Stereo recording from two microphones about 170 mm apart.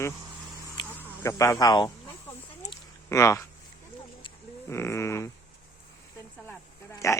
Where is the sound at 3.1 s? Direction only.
15° left (ahead or behind).